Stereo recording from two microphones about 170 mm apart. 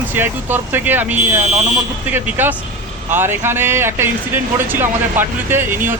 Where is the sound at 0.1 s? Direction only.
10° right (ahead or behind).